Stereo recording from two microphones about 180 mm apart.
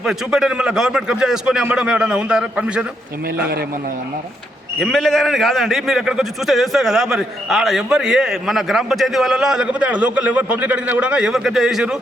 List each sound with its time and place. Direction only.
0.0 s a man's voice: centre (ahead or behind)
3.2 s a man's voice: 60° right (ahead or behind)
4.8 s a man's voice: centre (ahead or behind)